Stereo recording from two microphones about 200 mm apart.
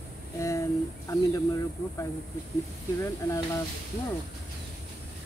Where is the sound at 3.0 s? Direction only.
15° left (ahead or behind).